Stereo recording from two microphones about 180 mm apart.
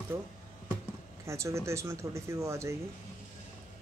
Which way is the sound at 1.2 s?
15° right (ahead or behind).